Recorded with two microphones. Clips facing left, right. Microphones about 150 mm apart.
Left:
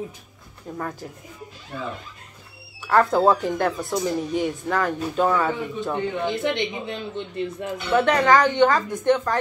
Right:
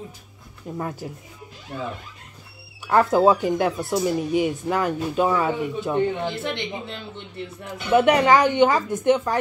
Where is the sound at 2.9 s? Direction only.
10° right (ahead or behind).